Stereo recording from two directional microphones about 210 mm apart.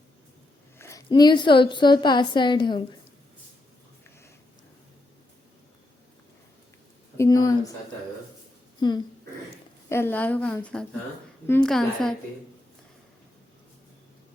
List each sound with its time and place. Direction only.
0.8 s a woman's voice: 15° left (ahead or behind)
7.2 s a sound: 15° left (ahead or behind)
9.9 s a woman's voice: 10° left (ahead or behind)